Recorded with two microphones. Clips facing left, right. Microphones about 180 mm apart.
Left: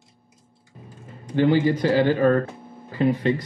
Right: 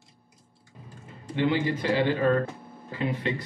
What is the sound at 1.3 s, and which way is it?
Speech, 40° left (ahead or behind).